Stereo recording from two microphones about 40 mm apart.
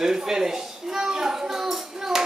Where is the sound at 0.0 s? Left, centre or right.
Centre.